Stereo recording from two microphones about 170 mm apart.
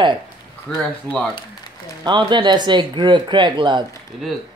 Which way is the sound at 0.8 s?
5° left (ahead or behind).